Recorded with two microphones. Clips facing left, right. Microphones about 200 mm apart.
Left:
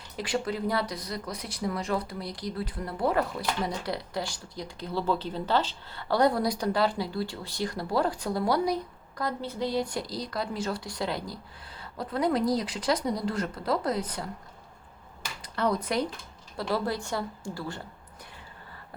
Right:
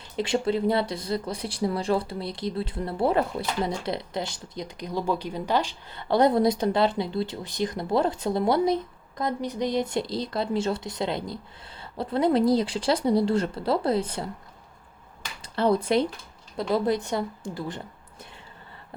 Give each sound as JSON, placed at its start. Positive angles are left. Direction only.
{"t": 0.2, "sound": "speech", "side_deg": -25}
{"t": 15.4, "sound": "speech", "side_deg": -30}